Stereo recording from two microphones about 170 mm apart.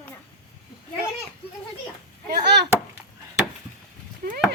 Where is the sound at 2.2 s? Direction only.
75° right (ahead or behind).